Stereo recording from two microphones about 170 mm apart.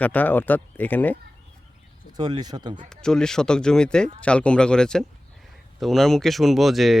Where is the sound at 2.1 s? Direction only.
25° right (ahead or behind).